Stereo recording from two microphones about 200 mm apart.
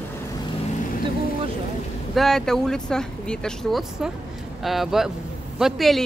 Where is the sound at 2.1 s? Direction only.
Centre (ahead or behind).